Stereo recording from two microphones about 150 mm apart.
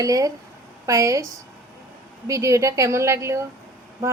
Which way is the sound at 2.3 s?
20° right (ahead or behind).